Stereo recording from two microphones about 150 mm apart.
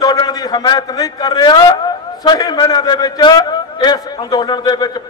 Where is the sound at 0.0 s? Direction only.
25° left (ahead or behind).